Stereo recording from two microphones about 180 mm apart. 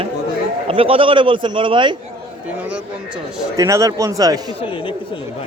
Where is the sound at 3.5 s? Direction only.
20° right (ahead or behind).